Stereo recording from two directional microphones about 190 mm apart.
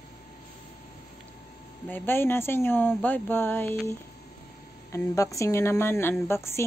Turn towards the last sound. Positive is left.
turn(degrees=15)  # may be behind; listen again after turning